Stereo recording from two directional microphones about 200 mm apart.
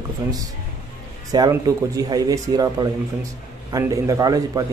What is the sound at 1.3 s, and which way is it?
Speech, 20° right (ahead or behind).